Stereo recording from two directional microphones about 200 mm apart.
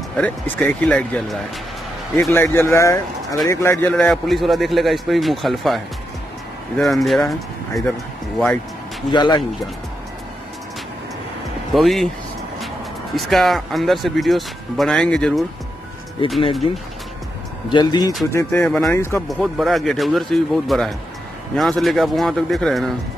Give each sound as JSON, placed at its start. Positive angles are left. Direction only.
{"t": 0.2, "sound": "a man's voice", "side_deg": 5}
{"t": 6.8, "sound": "a man's voice", "side_deg": 0}
{"t": 9.1, "sound": "speech", "side_deg": 20}
{"t": 11.7, "sound": "a man's voice", "side_deg": 0}
{"t": 13.1, "sound": "a man's voice", "side_deg": 0}
{"t": 16.2, "sound": "speech", "side_deg": 25}
{"t": 18.3, "sound": "a man's voice", "side_deg": 10}